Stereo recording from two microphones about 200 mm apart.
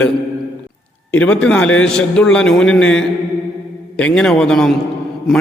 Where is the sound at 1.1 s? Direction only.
5° left (ahead or behind).